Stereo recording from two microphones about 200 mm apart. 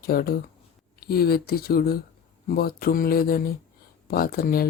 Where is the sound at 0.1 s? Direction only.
50° left (ahead or behind).